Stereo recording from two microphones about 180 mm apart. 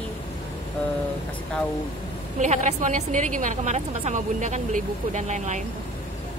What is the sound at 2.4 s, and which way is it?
A woman's voice, 40° right (ahead or behind).